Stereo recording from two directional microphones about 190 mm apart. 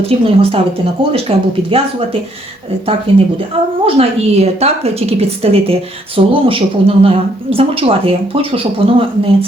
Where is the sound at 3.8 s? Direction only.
30° right (ahead or behind).